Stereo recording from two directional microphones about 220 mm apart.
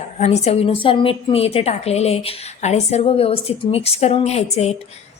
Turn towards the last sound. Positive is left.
turn(degrees=30)  # may be behind; listen again after turning